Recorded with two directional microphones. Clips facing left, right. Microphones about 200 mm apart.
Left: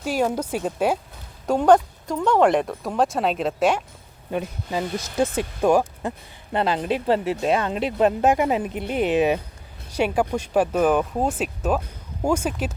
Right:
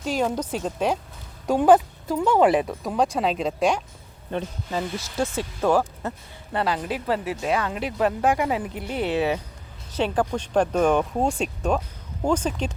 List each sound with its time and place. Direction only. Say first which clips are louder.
0.0 s speech: left 2 dB; 10° left (ahead or behind)
1.5 s speech: even; 5° right (ahead or behind)